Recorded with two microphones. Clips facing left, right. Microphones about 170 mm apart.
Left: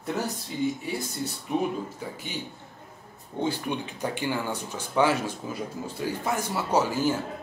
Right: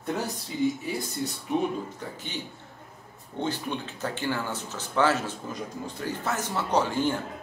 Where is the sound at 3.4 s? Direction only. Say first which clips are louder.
Left 2 dB; 10° left (ahead or behind).